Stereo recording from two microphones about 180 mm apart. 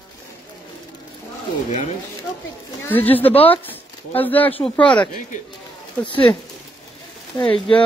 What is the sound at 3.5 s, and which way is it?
Speech, 10° left (ahead or behind).